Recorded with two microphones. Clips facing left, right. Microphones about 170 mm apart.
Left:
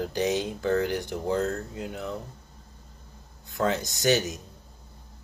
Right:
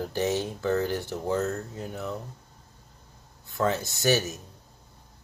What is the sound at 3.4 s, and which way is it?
Speech, 15° left (ahead or behind).